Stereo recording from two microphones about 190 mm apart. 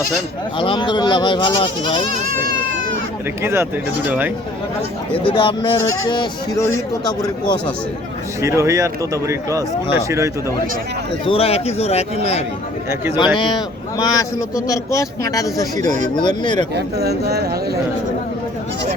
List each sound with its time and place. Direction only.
0.5 s speech: 25° left (ahead or behind)
3.4 s speech: 15° right (ahead or behind)
5.3 s speech: 25° left (ahead or behind)
8.4 s speech: 15° right (ahead or behind)
11.3 s a man's voice: 30° left (ahead or behind)
16.7 s speech: 60° right (ahead or behind)